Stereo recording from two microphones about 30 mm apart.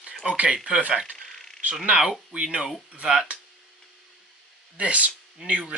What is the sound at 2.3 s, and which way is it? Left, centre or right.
Speech, right.